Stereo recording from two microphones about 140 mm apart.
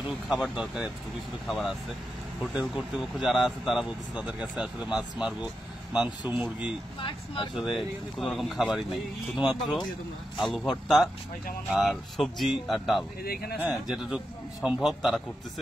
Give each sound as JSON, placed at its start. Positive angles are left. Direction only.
{"t": 0.3, "sound": "speech", "side_deg": -5}
{"t": 7.0, "sound": "speech", "side_deg": 40}
{"t": 7.5, "sound": "speech", "side_deg": 0}
{"t": 13.2, "sound": "speech", "side_deg": 90}
{"t": 13.8, "sound": "speech", "side_deg": -5}